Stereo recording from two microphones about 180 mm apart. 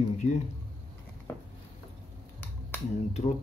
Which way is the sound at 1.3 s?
15° left (ahead or behind).